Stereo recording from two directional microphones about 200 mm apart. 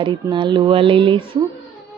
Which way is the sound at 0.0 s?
25° right (ahead or behind).